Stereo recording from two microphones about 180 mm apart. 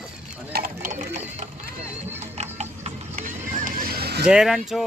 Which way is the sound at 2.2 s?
40° right (ahead or behind).